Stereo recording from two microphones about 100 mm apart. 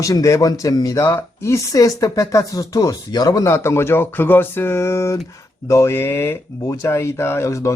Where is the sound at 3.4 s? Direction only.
25° left (ahead or behind).